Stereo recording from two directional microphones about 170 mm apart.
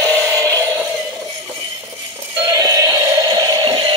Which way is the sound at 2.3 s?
20° right (ahead or behind).